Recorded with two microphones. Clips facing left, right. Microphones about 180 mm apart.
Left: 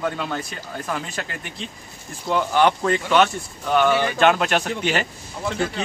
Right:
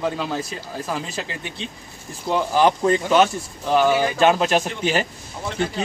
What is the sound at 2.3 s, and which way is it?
Speech, 35° right (ahead or behind).